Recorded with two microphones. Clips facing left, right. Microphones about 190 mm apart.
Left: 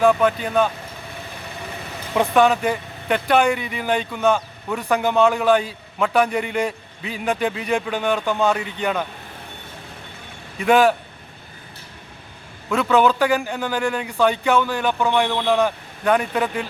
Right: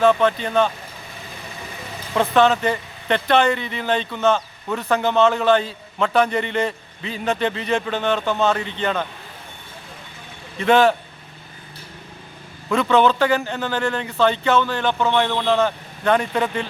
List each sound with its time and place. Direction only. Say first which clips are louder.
0.0 s speech: even; 10° left (ahead or behind)
2.1 s speech: even; 10° left (ahead or behind)
10.6 s speech: even; 10° left (ahead or behind)
12.7 s speech: right 1 dB; 5° left (ahead or behind)